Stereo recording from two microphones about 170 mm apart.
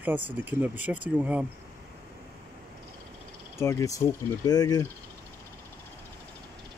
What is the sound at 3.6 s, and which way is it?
Speech, 15° left (ahead or behind).